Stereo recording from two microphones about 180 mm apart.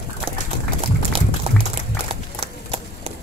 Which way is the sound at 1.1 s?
30° right (ahead or behind).